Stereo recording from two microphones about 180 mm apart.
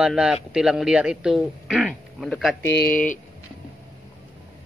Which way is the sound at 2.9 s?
45° left (ahead or behind).